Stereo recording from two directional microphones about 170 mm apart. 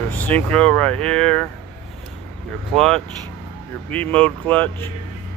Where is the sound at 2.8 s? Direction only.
Centre (ahead or behind).